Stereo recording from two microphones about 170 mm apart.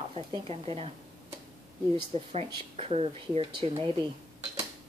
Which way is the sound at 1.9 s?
35° right (ahead or behind).